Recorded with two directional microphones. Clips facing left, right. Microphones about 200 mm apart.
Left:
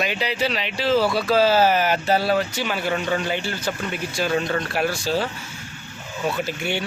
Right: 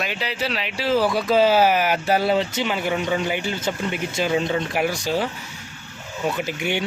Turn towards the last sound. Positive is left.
turn(degrees=-15)  # may be behind; listen again after turning